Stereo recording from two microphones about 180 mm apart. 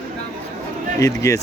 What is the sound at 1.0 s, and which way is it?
Speech, 15° left (ahead or behind).